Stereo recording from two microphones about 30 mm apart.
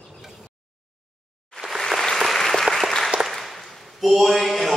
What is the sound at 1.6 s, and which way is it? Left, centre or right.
Applause, centre.